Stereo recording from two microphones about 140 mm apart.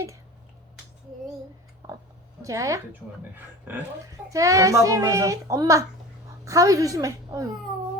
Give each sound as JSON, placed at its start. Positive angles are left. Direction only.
{"t": 2.4, "sound": "a woman's voice", "side_deg": -25}
{"t": 4.1, "sound": "a child's voice", "side_deg": -25}